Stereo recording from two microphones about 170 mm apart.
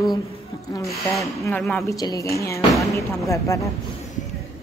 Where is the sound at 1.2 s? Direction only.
15° left (ahead or behind).